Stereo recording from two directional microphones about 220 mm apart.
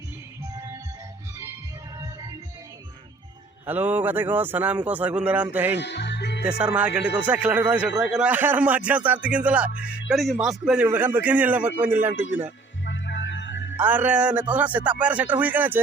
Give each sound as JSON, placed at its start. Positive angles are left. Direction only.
{"t": 3.7, "sound": "a man's voice", "side_deg": -10}
{"t": 5.8, "sound": "music", "side_deg": 50}
{"t": 6.4, "sound": "a man's voice", "side_deg": -5}
{"t": 12.8, "sound": "music", "side_deg": 55}
{"t": 13.7, "sound": "a man's voice", "side_deg": -5}